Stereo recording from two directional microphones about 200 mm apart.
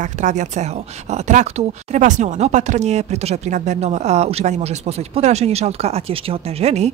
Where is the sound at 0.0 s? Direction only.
35° right (ahead or behind).